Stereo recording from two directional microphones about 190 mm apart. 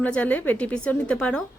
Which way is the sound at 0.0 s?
10° left (ahead or behind).